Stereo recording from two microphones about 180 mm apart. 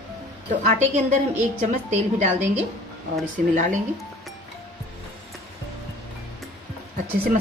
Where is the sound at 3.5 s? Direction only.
45° right (ahead or behind).